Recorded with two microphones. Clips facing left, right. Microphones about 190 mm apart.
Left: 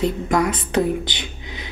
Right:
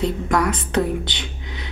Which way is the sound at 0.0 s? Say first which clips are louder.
Left 1 dB; 20° left (ahead or behind).